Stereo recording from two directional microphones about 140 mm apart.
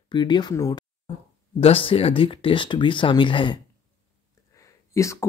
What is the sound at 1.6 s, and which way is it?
Speech, 40° left (ahead or behind).